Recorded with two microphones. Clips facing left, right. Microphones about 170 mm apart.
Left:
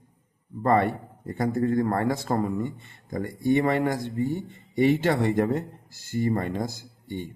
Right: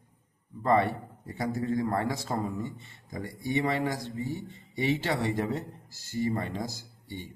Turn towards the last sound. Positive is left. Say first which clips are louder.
# left 6 dB
turn(degrees=50)  # may be behind; listen again after turning